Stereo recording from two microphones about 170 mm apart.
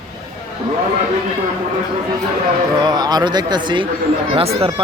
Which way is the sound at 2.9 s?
25° right (ahead or behind).